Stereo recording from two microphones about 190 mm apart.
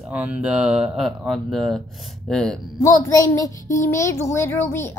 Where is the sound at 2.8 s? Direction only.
15° left (ahead or behind).